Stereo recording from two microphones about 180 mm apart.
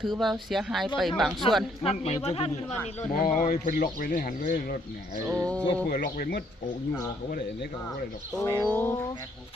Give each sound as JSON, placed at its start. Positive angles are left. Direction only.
{"t": 0.0, "sound": "speech", "side_deg": 0}
{"t": 1.8, "sound": "speech", "side_deg": 35}
{"t": 3.2, "sound": "speech", "side_deg": 50}
{"t": 5.2, "sound": "speech", "side_deg": -15}
{"t": 5.5, "sound": "bird", "side_deg": 5}
{"t": 5.9, "sound": "speech", "side_deg": 65}
{"t": 8.4, "sound": "bird", "side_deg": 15}